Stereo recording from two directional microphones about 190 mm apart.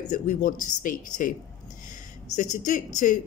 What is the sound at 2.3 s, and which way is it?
Speech, 40° left (ahead or behind).